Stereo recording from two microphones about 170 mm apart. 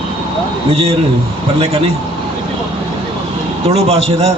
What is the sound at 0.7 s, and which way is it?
Speech, 35° right (ahead or behind).